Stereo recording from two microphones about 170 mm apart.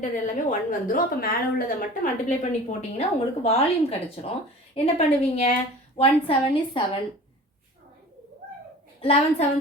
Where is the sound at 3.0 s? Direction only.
40° left (ahead or behind).